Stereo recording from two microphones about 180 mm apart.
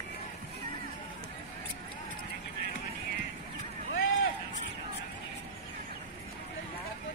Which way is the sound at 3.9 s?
90° left.